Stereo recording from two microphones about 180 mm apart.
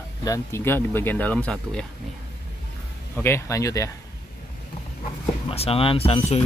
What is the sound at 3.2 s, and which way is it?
Speech, 15° left (ahead or behind).